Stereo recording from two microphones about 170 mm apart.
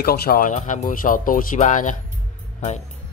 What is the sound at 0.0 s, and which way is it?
Speech, 65° left (ahead or behind).